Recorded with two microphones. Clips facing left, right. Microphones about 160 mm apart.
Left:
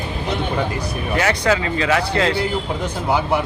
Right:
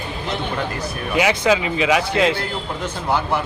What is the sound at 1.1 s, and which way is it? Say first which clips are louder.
Speech: right 1 dB; 15° right (ahead or behind).